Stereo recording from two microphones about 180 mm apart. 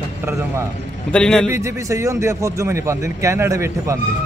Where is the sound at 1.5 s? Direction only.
15° right (ahead or behind).